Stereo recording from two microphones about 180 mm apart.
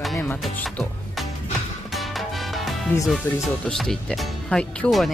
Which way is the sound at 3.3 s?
15° left (ahead or behind).